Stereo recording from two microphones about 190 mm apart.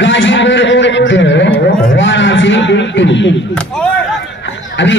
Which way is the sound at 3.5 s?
5° left (ahead or behind).